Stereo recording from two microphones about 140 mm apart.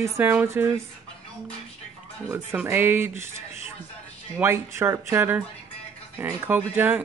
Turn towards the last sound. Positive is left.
turn(degrees=-15)  # may be behind; listen again after turning